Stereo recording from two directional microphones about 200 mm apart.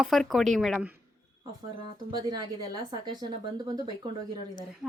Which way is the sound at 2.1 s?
20° right (ahead or behind).